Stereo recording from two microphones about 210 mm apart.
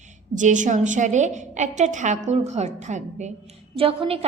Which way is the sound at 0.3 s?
35° right (ahead or behind).